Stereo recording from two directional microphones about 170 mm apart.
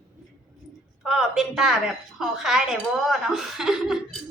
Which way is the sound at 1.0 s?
5° right (ahead or behind).